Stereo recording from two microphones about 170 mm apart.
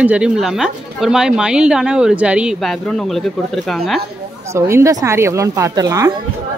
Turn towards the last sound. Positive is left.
turn(degrees=-20)  # may be behind; listen again after turning